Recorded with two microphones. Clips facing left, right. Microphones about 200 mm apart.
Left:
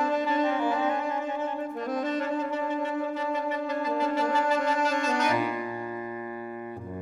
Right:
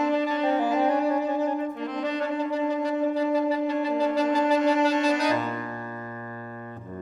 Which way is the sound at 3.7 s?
35° right (ahead or behind).